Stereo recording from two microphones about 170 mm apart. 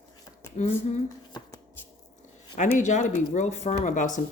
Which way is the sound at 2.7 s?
45° left (ahead or behind).